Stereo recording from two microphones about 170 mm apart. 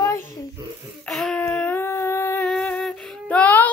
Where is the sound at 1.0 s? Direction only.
5° left (ahead or behind).